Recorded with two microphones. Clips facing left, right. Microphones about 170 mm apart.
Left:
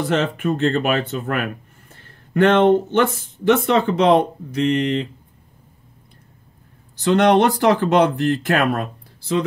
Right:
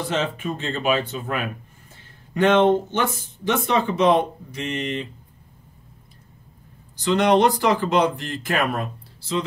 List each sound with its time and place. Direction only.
0.2 s speech: 55° left (ahead or behind)
7.0 s speech: 65° left (ahead or behind)